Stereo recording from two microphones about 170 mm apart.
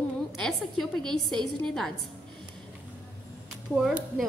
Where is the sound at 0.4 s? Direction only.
Centre (ahead or behind).